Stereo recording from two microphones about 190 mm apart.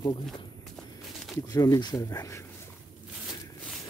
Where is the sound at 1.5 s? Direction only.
20° left (ahead or behind).